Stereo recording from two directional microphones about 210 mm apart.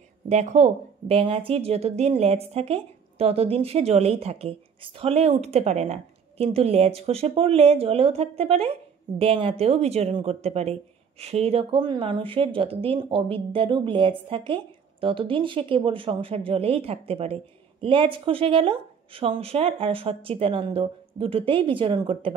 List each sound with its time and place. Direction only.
0.3 s a woman's voice: 35° right (ahead or behind)